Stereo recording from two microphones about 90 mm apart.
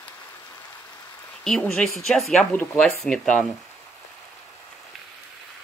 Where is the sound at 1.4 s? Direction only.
5° left (ahead or behind).